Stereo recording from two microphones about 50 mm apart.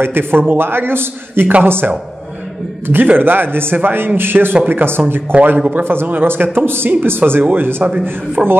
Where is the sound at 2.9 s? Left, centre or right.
Right.